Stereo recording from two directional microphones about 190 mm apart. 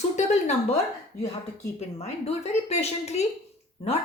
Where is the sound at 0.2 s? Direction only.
35° left (ahead or behind).